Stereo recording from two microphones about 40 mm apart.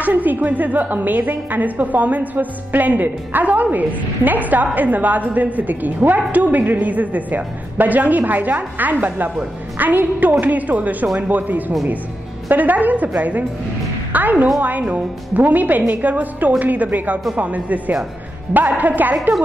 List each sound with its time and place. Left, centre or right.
0.0 s a woman's voice: right
14.1 s music: right
14.6 s a woman's voice: right
14.9 s speech: right
15.4 s a woman's voice: right